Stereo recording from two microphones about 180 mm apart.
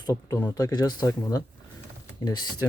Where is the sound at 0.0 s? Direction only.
20° left (ahead or behind).